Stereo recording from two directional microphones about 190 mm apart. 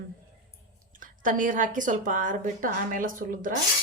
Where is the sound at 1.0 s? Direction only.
45° right (ahead or behind).